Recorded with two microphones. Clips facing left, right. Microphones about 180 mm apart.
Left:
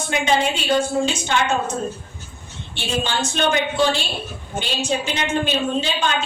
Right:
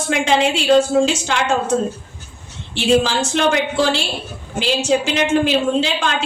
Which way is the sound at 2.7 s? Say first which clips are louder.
Right 8 dB; 90° right.